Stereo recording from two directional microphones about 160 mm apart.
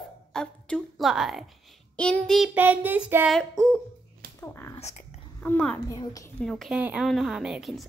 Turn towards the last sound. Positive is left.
turn(degrees=0)  # may be behind; listen again after turning